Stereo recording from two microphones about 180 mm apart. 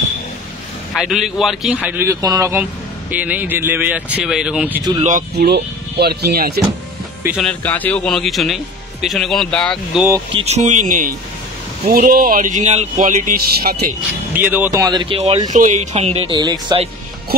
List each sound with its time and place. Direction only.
0.9 s speech: centre (ahead or behind)
5.3 s speech: 65° right (ahead or behind)
7.2 s speech: centre (ahead or behind)
7.6 s speech: 10° left (ahead or behind)
10.3 s speech: 35° right (ahead or behind); by 13.9 s 60° right (ahead or behind)
14.3 s speech: 10° right (ahead or behind); by 15.4 s 30° right (ahead or behind)
15.5 s speech: 45° right (ahead or behind); by 16.9 s 30° right (ahead or behind)